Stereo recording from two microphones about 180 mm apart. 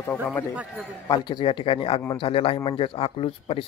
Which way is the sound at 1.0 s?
25° left (ahead or behind).